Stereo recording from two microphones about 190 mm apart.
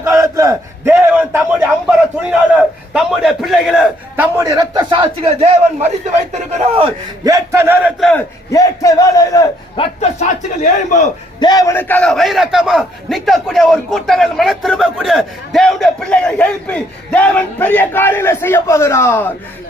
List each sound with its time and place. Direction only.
0.0 s battle cry: 15° right (ahead or behind)
1.1 s a man's voice: 5° right (ahead or behind)
4.4 s a man's voice: 15° right (ahead or behind); by 5.9 s 30° right (ahead or behind)
7.3 s speech: 15° right (ahead or behind)
8.4 s a man's voice: 15° left (ahead or behind)
9.7 s a man's voice: 30° left (ahead or behind)
11.3 s a man's voice: 20° left (ahead or behind)